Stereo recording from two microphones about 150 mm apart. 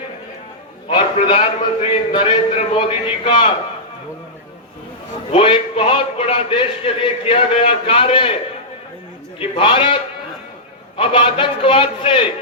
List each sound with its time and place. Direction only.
0.9 s a man's voice: 35° left (ahead or behind)
5.3 s a man's voice: 40° left (ahead or behind)
9.4 s a man's voice: 35° left (ahead or behind)